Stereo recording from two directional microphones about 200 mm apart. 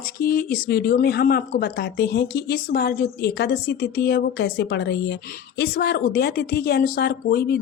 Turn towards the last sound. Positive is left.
turn(degrees=50)  # may be behind; listen again after turning